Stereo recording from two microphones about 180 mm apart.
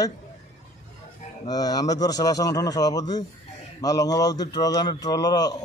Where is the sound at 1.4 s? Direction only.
20° left (ahead or behind).